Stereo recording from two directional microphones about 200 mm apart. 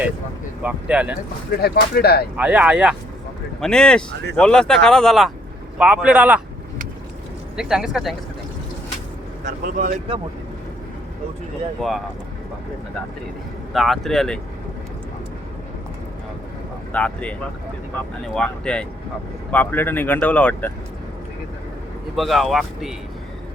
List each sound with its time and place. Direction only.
0.6 s speech: 5° right (ahead or behind)
1.6 s speech: 50° left (ahead or behind)
2.3 s speech: 5° right (ahead or behind)
7.5 s speech: 5° right (ahead or behind)
9.4 s speech: 45° right (ahead or behind)
13.7 s speech: centre (ahead or behind)
16.9 s speech: 5° left (ahead or behind)
18.3 s speech: 5° left (ahead or behind)
22.1 s speech: centre (ahead or behind)